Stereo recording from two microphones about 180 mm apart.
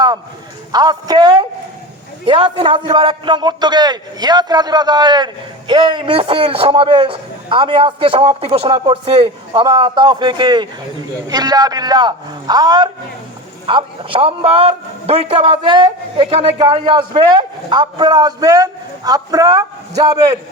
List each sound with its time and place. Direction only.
0.7 s a man's voice: 20° right (ahead or behind)